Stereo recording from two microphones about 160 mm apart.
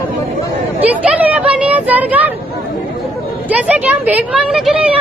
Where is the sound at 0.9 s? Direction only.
10° right (ahead or behind).